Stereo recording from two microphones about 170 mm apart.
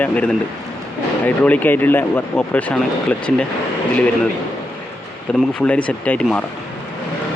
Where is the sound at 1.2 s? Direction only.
10° left (ahead or behind).